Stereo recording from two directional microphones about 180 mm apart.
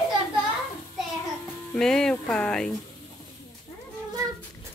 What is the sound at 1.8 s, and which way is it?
Speech, 5° left (ahead or behind).